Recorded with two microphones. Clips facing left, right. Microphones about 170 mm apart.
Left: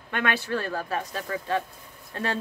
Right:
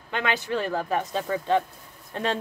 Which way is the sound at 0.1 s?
20° right (ahead or behind).